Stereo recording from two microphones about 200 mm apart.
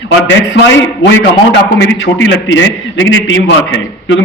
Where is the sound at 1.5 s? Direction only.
65° left (ahead or behind).